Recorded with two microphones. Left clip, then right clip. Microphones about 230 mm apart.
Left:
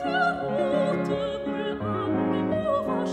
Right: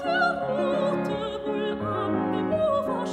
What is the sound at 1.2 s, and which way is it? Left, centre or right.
Music, right.